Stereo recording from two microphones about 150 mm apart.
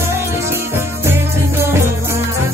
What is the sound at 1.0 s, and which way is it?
Music, 15° right (ahead or behind).